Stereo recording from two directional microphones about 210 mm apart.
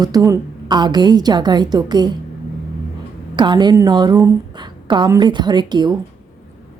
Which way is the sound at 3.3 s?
20° right (ahead or behind).